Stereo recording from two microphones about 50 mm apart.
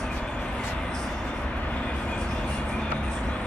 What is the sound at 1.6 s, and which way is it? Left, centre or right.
Vehicle, left.